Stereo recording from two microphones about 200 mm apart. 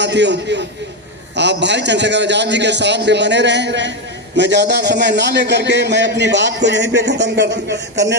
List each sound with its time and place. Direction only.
0.0 s a man's voice: 60° right (ahead or behind)